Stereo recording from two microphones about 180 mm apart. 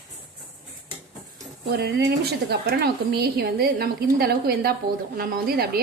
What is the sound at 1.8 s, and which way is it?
A woman's voice, 65° right (ahead or behind).